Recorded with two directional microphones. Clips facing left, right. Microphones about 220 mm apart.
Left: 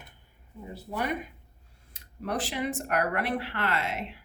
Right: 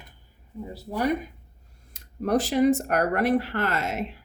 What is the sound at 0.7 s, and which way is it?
Speech, 40° right (ahead or behind).